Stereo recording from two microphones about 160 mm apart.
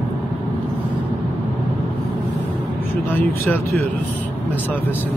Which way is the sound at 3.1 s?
10° left (ahead or behind).